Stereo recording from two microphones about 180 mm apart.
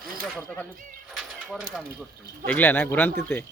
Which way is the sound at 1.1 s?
5° right (ahead or behind).